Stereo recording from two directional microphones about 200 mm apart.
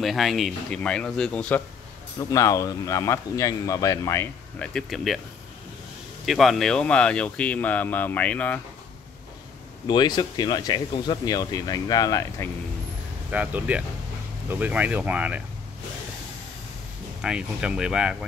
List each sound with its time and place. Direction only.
0.0 s speech: centre (ahead or behind)
2.1 s speech: 15° left (ahead or behind); by 5.2 s centre (ahead or behind)
6.2 s speech: centre (ahead or behind)
9.8 s speech: 20° left (ahead or behind)
13.3 s speech: 10° right (ahead or behind)
17.2 s speech: 5° right (ahead or behind)